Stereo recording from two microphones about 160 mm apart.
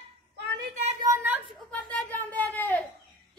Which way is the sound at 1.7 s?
10° left (ahead or behind).